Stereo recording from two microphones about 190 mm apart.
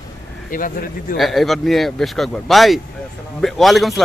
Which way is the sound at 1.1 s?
Centre (ahead or behind).